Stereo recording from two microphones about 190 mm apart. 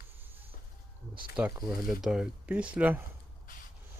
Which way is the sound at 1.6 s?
Centre (ahead or behind).